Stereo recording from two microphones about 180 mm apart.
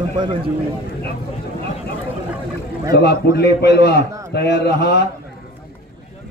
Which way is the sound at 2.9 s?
60° left (ahead or behind).